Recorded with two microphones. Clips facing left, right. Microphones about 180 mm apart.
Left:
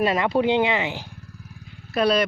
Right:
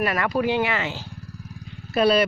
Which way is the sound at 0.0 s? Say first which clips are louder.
Left 2 dB; 25° left (ahead or behind).